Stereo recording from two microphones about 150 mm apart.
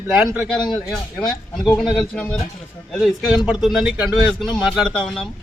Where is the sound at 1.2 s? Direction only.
Centre (ahead or behind).